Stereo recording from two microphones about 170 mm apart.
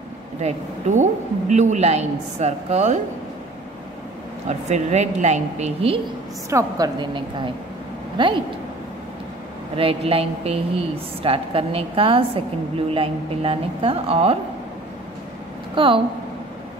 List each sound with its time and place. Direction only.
0.4 s a woman's voice: 45° right (ahead or behind)
4.5 s a woman's voice: 40° right (ahead or behind)
6.5 s a woman's voice: 25° right (ahead or behind)
9.8 s a woman's voice: 35° right (ahead or behind)
15.7 s speech: 30° right (ahead or behind)